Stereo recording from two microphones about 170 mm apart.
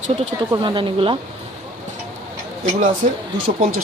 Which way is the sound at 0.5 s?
30° right (ahead or behind).